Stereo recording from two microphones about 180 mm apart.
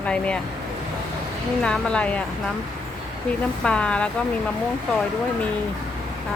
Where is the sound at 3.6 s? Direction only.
5° left (ahead or behind).